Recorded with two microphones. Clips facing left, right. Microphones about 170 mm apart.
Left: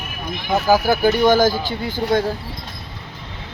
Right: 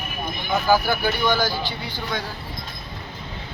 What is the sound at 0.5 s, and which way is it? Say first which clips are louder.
Speech: left 4 dB; 40° left (ahead or behind).